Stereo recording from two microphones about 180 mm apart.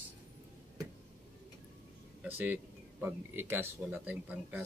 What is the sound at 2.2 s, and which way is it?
Speech, 10° right (ahead or behind).